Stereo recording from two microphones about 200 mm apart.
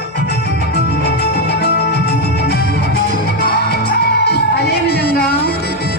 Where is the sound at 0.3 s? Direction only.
55° left (ahead or behind).